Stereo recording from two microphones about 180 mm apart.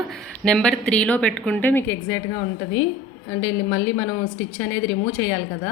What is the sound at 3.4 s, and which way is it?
A woman's voice, 15° left (ahead or behind).